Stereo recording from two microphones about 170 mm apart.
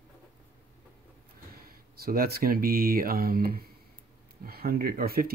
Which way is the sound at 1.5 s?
60° right (ahead or behind).